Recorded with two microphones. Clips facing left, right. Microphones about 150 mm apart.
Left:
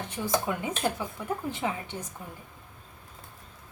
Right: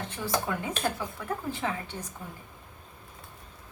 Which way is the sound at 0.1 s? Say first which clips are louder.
Left 2 dB; 20° left (ahead or behind).